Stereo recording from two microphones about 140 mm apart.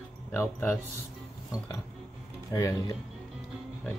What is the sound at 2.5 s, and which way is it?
Speech, 25° left (ahead or behind).